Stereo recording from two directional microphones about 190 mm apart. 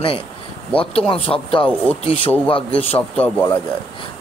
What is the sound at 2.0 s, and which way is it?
Speech, 30° left (ahead or behind).